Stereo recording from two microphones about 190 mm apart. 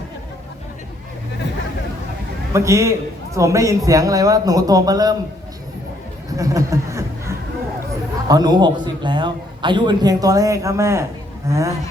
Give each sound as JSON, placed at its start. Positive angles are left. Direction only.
{"t": 2.5, "sound": "a man's voice", "side_deg": -15}
{"t": 6.3, "sound": "a sound", "side_deg": -15}
{"t": 8.3, "sound": "a man's voice", "side_deg": -20}